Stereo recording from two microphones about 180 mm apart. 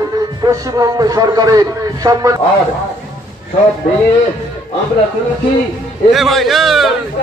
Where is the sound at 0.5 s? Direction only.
20° right (ahead or behind).